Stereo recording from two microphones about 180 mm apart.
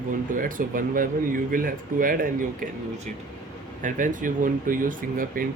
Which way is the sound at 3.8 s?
45° right (ahead or behind).